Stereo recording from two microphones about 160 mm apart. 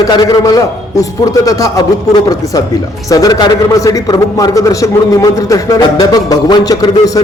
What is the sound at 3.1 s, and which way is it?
A man's voice, 20° left (ahead or behind).